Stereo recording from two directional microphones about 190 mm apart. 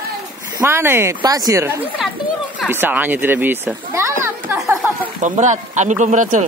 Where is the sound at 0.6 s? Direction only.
15° right (ahead or behind).